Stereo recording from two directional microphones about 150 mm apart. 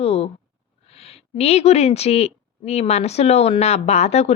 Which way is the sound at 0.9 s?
40° left (ahead or behind).